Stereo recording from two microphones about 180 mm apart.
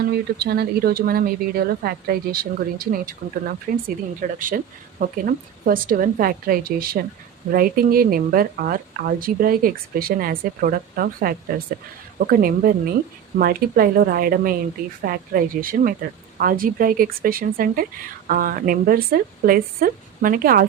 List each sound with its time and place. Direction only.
0.0 s speech: 60° right (ahead or behind)